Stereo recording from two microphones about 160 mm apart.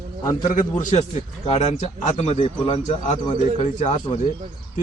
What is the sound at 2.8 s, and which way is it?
A man's voice, 45° left (ahead or behind).